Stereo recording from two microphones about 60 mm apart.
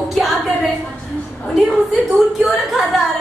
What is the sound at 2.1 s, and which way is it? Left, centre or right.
Speech, centre.